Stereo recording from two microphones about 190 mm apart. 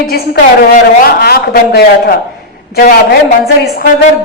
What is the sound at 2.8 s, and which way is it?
Speech, 40° left (ahead or behind).